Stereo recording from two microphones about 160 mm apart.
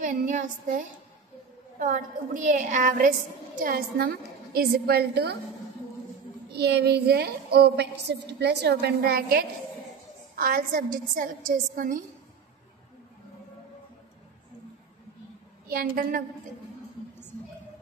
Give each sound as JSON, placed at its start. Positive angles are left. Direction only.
{"t": 0.0, "sound": "a woman's voice", "side_deg": -50}
{"t": 6.5, "sound": "a woman's voice", "side_deg": -90}
{"t": 10.3, "sound": "a woman's voice", "side_deg": -65}
{"t": 15.7, "sound": "a woman's voice", "side_deg": -65}